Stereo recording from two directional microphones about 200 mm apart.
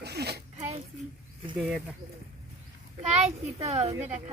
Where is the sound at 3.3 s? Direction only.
30° right (ahead or behind).